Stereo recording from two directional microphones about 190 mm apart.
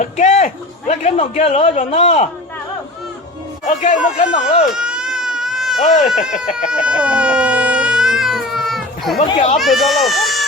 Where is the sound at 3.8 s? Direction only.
40° left (ahead or behind).